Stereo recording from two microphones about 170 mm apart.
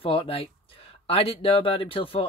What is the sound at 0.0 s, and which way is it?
Speech, 35° left (ahead or behind).